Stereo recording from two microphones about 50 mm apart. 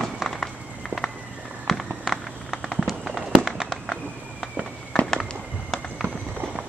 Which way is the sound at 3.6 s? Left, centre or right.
Centre.